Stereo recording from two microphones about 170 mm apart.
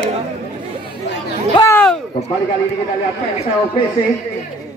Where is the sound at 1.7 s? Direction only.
10° left (ahead or behind).